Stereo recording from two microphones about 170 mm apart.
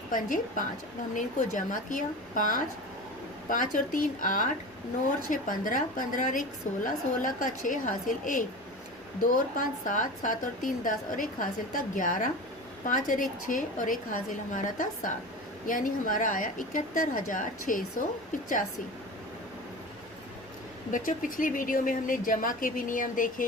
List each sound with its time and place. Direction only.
0.1 s a woman's voice: 50° left (ahead or behind)
20.9 s a woman's voice: 55° left (ahead or behind)